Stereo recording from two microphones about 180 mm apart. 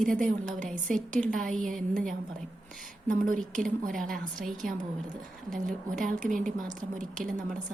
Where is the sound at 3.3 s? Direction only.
5° left (ahead or behind).